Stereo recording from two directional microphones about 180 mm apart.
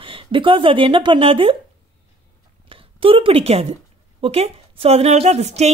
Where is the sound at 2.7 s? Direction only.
30° right (ahead or behind).